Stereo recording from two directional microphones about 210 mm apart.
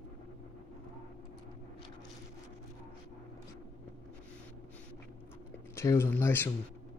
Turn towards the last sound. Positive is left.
turn(degrees=10)  # may be behind; listen again after turning